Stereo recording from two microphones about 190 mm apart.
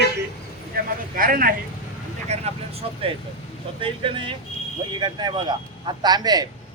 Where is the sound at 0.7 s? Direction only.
50° right (ahead or behind).